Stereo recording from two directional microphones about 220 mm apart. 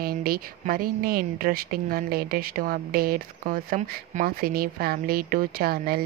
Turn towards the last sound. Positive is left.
turn(degrees=-45)  # may be behind; listen again after turning